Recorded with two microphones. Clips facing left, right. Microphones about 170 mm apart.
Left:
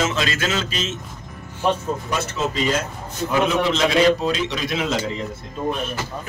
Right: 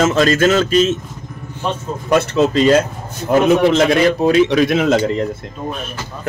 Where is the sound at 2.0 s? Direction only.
65° right (ahead or behind).